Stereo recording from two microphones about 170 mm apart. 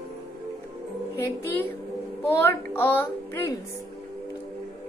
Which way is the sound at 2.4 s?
10° left (ahead or behind).